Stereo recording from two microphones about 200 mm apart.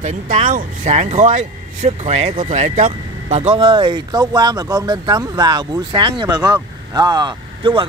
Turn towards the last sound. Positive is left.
turn(degrees=-25)  # may be behind; listen again after turning